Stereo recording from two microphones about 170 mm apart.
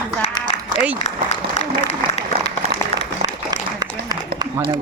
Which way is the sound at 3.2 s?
20° right (ahead or behind).